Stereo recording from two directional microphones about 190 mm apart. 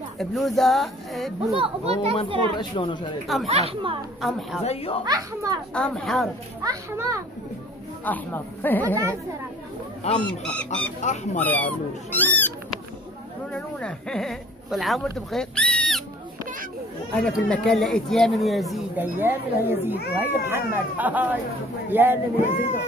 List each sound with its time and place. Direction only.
0.2 s speech: centre (ahead or behind)
1.6 s a child's voice: 30° right (ahead or behind)
2.5 s speech: 25° left (ahead or behind)
3.4 s a child's voice: 30° right (ahead or behind)
4.2 s speech: centre (ahead or behind)
4.6 s speech: 30° left (ahead or behind)
5.0 s a child's voice: 20° right (ahead or behind)
5.7 s speech: 5° left (ahead or behind)
6.6 s speech: 15° right (ahead or behind)
8.0 s speech: 10° left (ahead or behind)
10.2 s speech: 5° left (ahead or behind)
17.1 s speech: 5° left (ahead or behind)
19.1 s speech: 10° right (ahead or behind)